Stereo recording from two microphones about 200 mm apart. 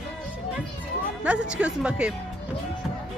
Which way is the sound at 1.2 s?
5° right (ahead or behind).